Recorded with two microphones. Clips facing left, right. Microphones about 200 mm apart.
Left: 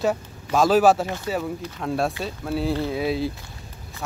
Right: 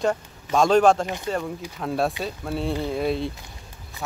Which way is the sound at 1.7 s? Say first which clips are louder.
Right 1 dB; centre (ahead or behind).